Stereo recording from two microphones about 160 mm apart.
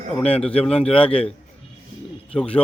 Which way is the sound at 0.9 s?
10° left (ahead or behind).